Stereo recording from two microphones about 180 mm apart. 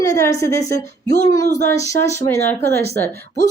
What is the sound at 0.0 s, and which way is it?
A woman's voice, 15° left (ahead or behind).